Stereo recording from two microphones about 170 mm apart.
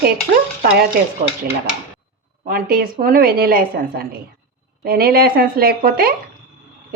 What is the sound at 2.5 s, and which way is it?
A woman's voice, 60° right (ahead or behind).